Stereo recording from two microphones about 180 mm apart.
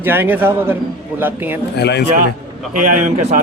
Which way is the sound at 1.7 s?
65° left (ahead or behind).